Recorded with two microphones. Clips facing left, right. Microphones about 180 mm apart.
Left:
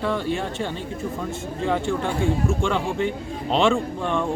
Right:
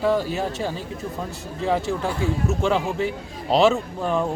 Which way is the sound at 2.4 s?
40° right (ahead or behind).